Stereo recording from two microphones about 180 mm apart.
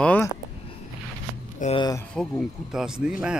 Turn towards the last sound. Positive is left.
turn(degrees=-5)  # may be behind; listen again after turning